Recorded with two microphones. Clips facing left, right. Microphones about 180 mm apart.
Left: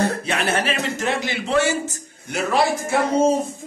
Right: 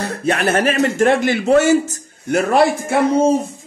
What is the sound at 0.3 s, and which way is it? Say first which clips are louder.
A man's voice: right 6 dB; 50° right (ahead or behind).